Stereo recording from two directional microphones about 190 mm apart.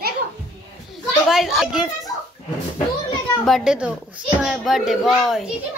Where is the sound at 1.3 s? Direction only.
Centre (ahead or behind).